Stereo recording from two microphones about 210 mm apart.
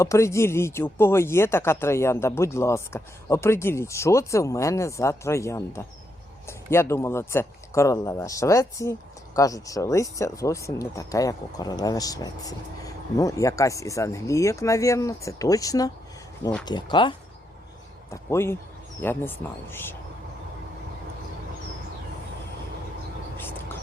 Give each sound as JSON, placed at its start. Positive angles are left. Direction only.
{"t": 0.0, "sound": "speech", "side_deg": 15}